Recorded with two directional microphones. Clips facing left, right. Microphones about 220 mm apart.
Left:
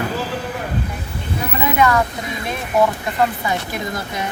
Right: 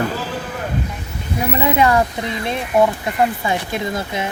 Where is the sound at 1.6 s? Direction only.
30° right (ahead or behind).